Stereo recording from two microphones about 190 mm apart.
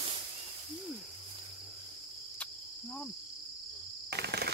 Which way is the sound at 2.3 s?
5° left (ahead or behind).